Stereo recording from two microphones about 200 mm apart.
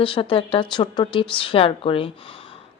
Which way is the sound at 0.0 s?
25° left (ahead or behind).